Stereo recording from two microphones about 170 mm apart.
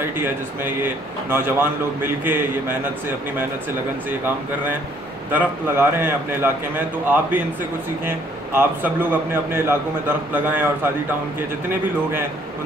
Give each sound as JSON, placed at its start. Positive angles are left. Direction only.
{"t": 0.2, "sound": "a man's voice", "side_deg": -10}
{"t": 5.3, "sound": "a man's voice", "side_deg": -10}
{"t": 8.5, "sound": "a man's voice", "side_deg": -10}